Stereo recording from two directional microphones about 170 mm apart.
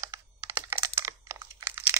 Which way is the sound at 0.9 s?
20° right (ahead or behind).